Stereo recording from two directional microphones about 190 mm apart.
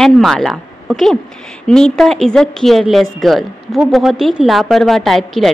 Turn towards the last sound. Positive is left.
turn(degrees=0)  # may be behind; listen again after turning